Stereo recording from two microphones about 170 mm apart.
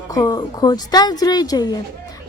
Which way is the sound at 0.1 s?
20° left (ahead or behind).